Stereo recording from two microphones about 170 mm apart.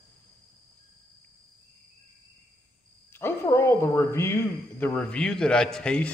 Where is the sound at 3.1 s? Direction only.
15° left (ahead or behind).